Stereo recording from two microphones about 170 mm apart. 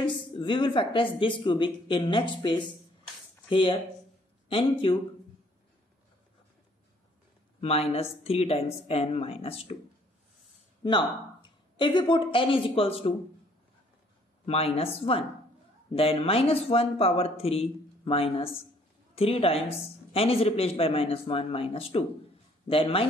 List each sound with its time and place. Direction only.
0.0 s speech: 30° left (ahead or behind)
7.6 s speech: 35° left (ahead or behind)
10.8 s speech: 25° left (ahead or behind)
14.4 s speech: 35° left (ahead or behind)